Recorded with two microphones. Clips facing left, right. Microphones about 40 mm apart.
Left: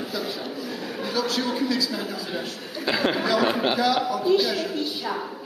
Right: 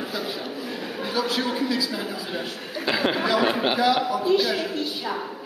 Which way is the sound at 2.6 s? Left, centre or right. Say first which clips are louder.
Even; centre.